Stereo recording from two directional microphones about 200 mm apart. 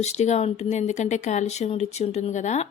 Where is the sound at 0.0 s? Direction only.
35° left (ahead or behind).